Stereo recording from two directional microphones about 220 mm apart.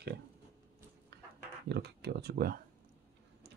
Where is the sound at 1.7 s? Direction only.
50° right (ahead or behind).